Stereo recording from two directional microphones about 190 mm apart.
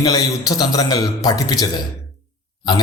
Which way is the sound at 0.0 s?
20° left (ahead or behind).